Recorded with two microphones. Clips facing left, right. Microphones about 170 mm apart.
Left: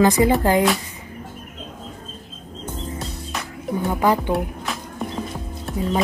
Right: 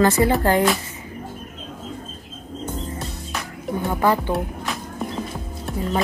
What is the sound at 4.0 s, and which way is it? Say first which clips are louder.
Speech: even; 15° left (ahead or behind).